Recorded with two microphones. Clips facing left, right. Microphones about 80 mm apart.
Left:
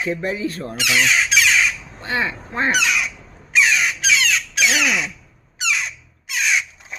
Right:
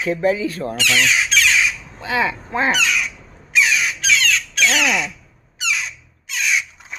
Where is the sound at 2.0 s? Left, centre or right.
Right.